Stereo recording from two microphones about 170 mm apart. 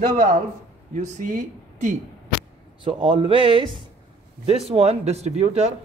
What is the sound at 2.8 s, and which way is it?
Speech, 30° right (ahead or behind).